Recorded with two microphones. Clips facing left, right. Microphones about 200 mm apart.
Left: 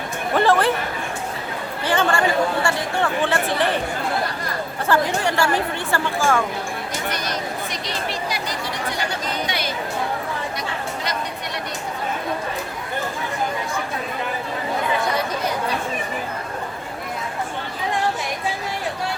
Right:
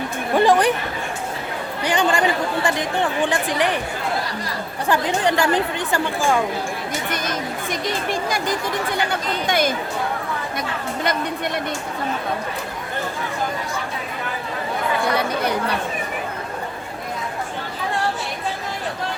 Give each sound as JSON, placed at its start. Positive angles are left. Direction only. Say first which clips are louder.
{"t": 0.3, "sound": "speech", "louder": "right 2 dB", "side_deg": -15}
{"t": 1.8, "sound": "speech", "louder": "right 1 dB", "side_deg": -15}
{"t": 4.9, "sound": "speech", "louder": "right 1 dB", "side_deg": -20}
{"t": 7.1, "sound": "speech", "louder": "right 1 dB", "side_deg": -50}
{"t": 11.0, "sound": "speech", "louder": "right 5 dB", "side_deg": -55}